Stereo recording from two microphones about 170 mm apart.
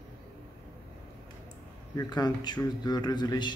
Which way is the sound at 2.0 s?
25° left (ahead or behind).